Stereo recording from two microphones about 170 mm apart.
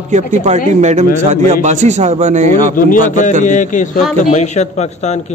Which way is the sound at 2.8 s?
55° left (ahead or behind).